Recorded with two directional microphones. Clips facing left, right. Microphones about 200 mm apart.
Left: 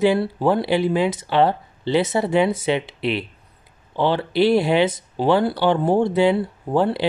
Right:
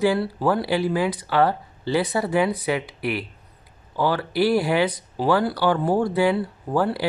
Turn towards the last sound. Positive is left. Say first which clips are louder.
# left 3 dB
turn(degrees=25)  # may be behind; listen again after turning